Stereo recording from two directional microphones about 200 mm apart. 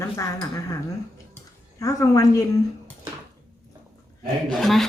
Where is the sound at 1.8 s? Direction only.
15° left (ahead or behind).